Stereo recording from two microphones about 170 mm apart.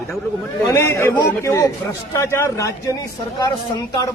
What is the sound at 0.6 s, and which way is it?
A man's voice, 15° left (ahead or behind).